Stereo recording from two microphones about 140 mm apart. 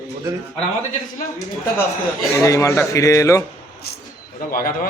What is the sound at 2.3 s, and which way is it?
A man's voice, 25° left (ahead or behind).